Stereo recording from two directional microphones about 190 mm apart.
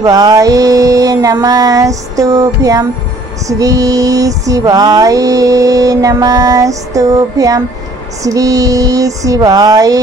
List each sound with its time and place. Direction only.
0.0 s mantra: 20° right (ahead or behind)
3.4 s music: 20° right (ahead or behind)
8.2 s mantra: 20° right (ahead or behind)